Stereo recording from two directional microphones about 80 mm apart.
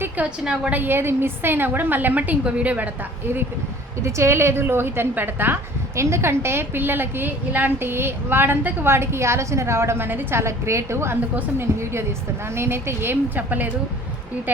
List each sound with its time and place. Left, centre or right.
0.2 s a woman's voice: centre
0.7 s a woman's voice: right
4.0 s a woman's voice: right